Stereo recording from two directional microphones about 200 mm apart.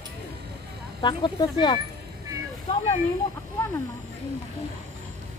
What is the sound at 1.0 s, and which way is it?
Speech, 20° left (ahead or behind).